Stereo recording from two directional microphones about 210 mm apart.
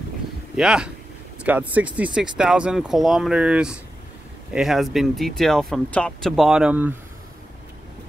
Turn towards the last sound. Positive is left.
turn(degrees=-5)  # may be behind; listen again after turning